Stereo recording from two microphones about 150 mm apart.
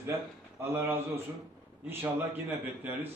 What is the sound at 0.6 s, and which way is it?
A man's voice, 15° right (ahead or behind).